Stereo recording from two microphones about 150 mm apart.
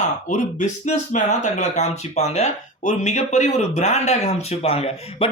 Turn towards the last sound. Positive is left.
turn(degrees=40)  # may be behind; listen again after turning